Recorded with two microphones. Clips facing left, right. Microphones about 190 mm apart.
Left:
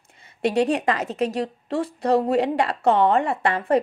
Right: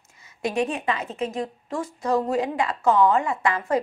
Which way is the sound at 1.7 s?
65° left (ahead or behind).